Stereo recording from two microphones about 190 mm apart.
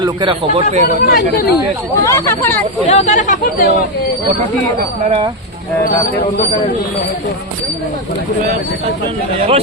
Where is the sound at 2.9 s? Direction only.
35° left (ahead or behind).